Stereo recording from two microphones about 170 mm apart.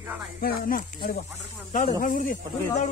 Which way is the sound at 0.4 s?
60° left (ahead or behind).